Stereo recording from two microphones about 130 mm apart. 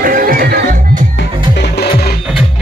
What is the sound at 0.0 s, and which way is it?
Music, 90° right.